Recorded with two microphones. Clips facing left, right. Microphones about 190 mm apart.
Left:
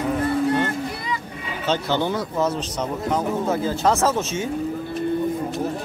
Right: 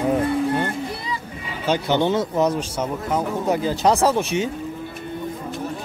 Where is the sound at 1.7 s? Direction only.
20° right (ahead or behind).